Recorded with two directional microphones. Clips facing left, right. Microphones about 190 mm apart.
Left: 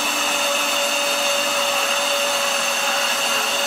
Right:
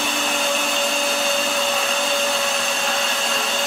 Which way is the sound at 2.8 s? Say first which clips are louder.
Even; centre (ahead or behind).